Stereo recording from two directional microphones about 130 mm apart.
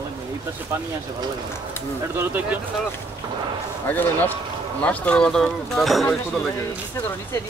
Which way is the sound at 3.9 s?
15° left (ahead or behind).